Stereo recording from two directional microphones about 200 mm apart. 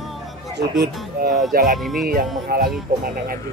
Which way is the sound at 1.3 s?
Centre (ahead or behind).